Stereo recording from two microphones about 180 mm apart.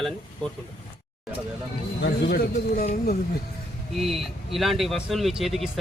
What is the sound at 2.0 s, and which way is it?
Speech, 65° left (ahead or behind).